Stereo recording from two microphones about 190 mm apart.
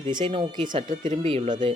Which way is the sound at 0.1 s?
25° right (ahead or behind).